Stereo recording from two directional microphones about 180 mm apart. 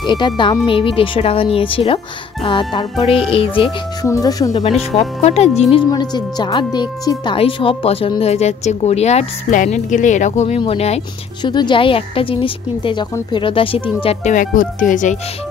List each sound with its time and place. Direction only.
0.0 s a woman's voice: 25° left (ahead or behind)
4.0 s a woman's voice: 20° left (ahead or behind)
4.9 s a woman's voice: 35° left (ahead or behind)
14.0 s speech: 45° left (ahead or behind)